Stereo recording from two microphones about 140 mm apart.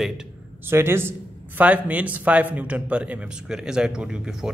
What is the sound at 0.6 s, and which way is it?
Speech, 15° right (ahead or behind).